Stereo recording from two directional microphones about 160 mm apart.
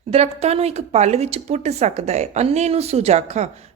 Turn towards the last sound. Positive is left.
turn(degrees=-45)  # may be behind; listen again after turning